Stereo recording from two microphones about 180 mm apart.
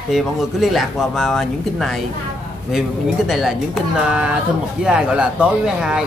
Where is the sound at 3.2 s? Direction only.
Centre (ahead or behind).